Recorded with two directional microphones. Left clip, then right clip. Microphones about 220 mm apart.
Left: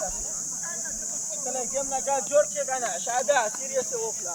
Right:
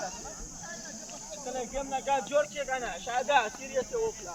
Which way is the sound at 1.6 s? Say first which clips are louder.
Left 3 dB; 55° left (ahead or behind).